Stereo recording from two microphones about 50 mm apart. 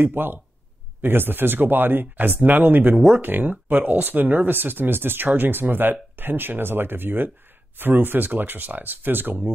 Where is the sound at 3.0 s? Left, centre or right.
Centre.